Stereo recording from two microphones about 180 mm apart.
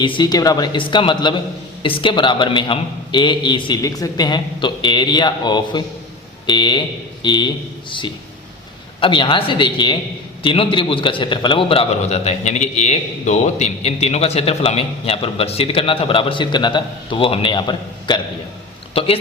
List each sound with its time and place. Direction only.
0.0 s a man's voice: 25° left (ahead or behind)